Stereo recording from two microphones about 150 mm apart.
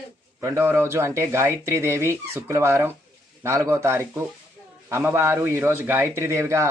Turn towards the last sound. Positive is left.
turn(degrees=-20)  # may be behind; listen again after turning